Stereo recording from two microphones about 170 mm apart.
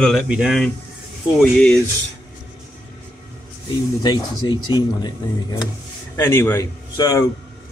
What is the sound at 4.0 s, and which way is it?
A man's voice, 25° left (ahead or behind).